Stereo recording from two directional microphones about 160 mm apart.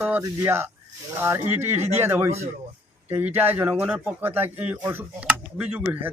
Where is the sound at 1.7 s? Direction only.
40° right (ahead or behind).